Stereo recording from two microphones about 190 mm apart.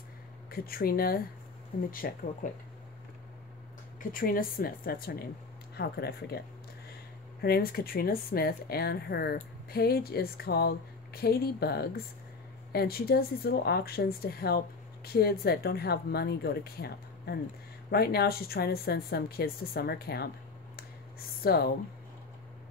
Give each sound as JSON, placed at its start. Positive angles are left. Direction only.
{"t": 0.5, "sound": "speech", "side_deg": 50}
{"t": 4.1, "sound": "a woman's voice", "side_deg": 50}
{"t": 7.4, "sound": "a woman's voice", "side_deg": 55}
{"t": 21.5, "sound": "speech", "side_deg": 55}